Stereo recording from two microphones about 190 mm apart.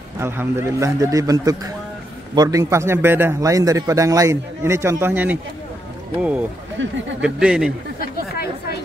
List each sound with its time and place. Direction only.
0.2 s a man's voice: 15° right (ahead or behind)
6.8 s speech: 75° right (ahead or behind)
7.2 s speech: 5° right (ahead or behind)
8.0 s chatter: 55° left (ahead or behind)